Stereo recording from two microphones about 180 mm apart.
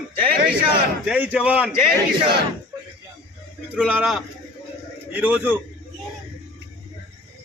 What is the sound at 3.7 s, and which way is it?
A man's voice, 5° right (ahead or behind).